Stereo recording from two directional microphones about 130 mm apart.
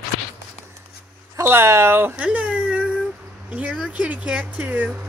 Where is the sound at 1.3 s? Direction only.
20° right (ahead or behind).